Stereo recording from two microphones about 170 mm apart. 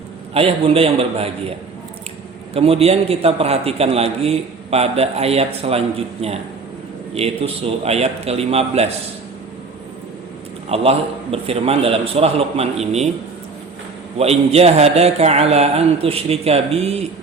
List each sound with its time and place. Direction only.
0.3 s a man's voice: 35° right (ahead or behind)
7.1 s a man's voice: 35° right (ahead or behind)
10.7 s a man's voice: 35° right (ahead or behind)
14.2 s a man's voice: 35° right (ahead or behind)